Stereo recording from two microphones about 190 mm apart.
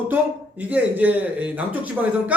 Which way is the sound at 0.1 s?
10° right (ahead or behind).